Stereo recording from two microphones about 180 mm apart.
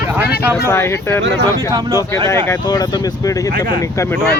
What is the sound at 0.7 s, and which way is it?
Speech, 15° left (ahead or behind).